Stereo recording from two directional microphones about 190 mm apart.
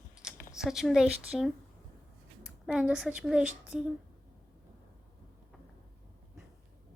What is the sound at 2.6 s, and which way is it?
A woman's voice, centre (ahead or behind).